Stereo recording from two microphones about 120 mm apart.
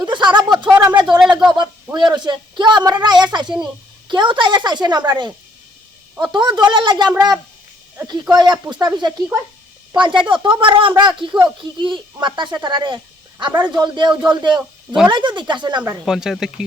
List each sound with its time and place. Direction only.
0.0 s speech: 40° right (ahead or behind)
1.2 s a sound: 5° right (ahead or behind)
1.5 s a child's voice: 40° right (ahead or behind)
6.3 s a child's voice: 40° right (ahead or behind)
8.3 s a child's voice: 35° right (ahead or behind)
16.0 s speech: centre (ahead or behind)